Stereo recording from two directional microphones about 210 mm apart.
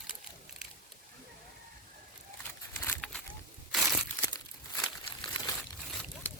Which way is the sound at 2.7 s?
10° left (ahead or behind).